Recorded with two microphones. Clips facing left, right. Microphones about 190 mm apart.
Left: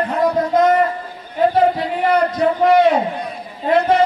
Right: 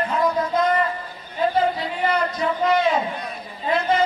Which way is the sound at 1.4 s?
60° left (ahead or behind).